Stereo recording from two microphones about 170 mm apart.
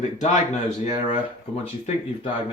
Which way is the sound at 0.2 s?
45° left (ahead or behind).